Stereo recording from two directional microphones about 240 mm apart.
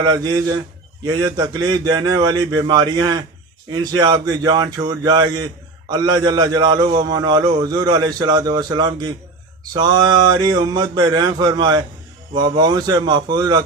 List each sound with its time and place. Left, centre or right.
0.0 s a man's voice: centre